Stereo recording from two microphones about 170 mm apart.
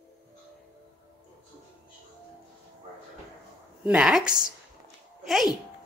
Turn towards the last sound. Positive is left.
turn(degrees=0)  # may be behind; listen again after turning